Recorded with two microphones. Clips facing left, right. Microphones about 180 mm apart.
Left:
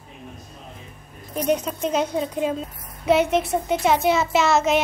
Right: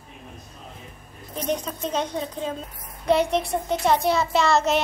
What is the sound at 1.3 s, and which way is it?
A child's voice, 10° left (ahead or behind).